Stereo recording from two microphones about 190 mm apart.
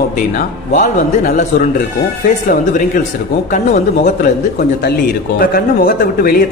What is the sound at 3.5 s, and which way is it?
Speech, 45° left (ahead or behind).